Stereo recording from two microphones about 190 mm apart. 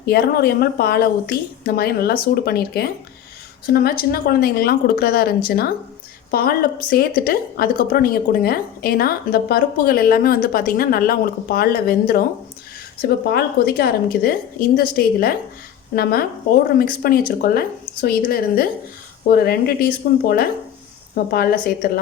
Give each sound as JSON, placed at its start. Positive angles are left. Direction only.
{"t": 0.0, "sound": "a woman's voice", "side_deg": 55}
{"t": 16.7, "sound": "a woman's voice", "side_deg": 50}